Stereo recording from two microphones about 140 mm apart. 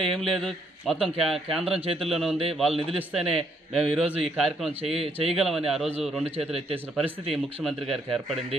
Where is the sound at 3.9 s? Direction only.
5° right (ahead or behind).